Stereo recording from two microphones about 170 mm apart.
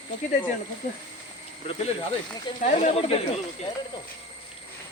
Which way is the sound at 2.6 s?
40° left (ahead or behind).